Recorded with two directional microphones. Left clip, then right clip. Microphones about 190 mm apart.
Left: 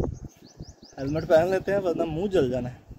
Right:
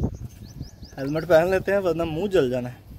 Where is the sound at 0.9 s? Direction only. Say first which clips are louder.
Right 2 dB; 5° right (ahead or behind).